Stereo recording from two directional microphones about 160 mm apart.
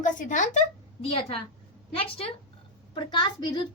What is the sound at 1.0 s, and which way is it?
A woman's voice, 35° left (ahead or behind).